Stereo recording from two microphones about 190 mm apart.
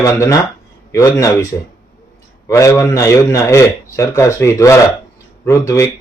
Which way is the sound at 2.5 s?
15° left (ahead or behind).